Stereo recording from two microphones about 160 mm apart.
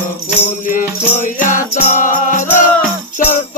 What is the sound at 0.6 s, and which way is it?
Music, 55° left (ahead or behind).